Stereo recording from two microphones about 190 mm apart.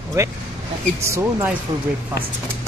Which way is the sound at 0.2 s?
15° right (ahead or behind).